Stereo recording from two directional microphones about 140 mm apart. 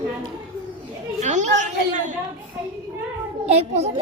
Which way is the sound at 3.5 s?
50° right (ahead or behind).